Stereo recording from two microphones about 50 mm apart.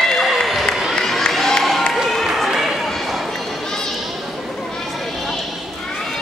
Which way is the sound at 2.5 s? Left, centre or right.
Centre.